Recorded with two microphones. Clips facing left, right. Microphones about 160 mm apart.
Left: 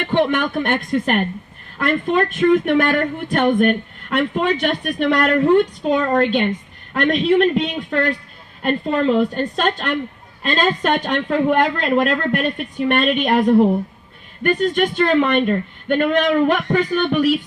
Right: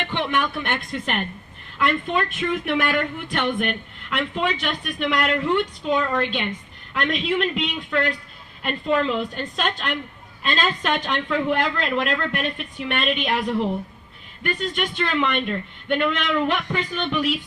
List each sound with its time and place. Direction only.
0.0 s a woman's voice: 40° left (ahead or behind)